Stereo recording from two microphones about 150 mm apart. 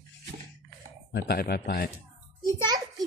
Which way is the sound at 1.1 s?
85° left.